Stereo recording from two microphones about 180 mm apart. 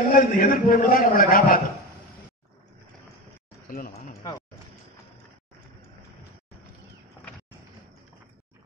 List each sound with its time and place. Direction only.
0.1 s a man's voice: 55° left (ahead or behind)
3.6 s a man's voice: 50° left (ahead or behind)